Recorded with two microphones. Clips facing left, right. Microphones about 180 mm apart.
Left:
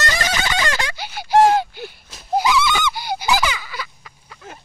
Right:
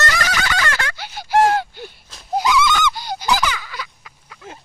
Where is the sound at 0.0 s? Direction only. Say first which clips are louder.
Even; 25° left (ahead or behind); by 4.4 s centre (ahead or behind).